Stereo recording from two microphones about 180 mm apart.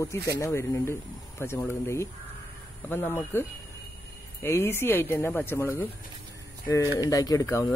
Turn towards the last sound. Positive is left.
turn(degrees=15)  # may be behind; listen again after turning